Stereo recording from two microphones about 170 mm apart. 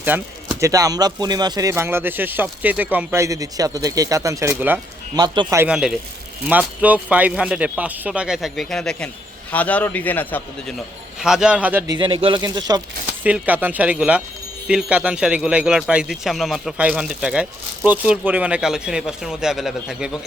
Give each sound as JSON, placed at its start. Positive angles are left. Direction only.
{"t": 0.0, "sound": "speech", "side_deg": -10}
{"t": 5.1, "sound": "speech", "side_deg": -25}
{"t": 5.5, "sound": "a man's voice", "side_deg": -5}
{"t": 11.2, "sound": "a man's voice", "side_deg": -5}
{"t": 11.9, "sound": "speech", "side_deg": -30}
{"t": 13.2, "sound": "a man's voice", "side_deg": -10}